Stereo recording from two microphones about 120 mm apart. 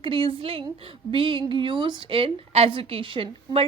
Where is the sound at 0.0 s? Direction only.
45° right (ahead or behind).